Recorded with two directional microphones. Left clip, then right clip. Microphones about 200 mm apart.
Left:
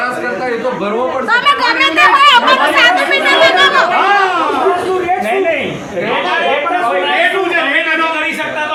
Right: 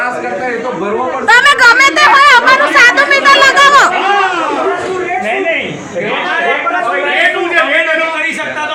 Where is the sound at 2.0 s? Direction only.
30° right (ahead or behind).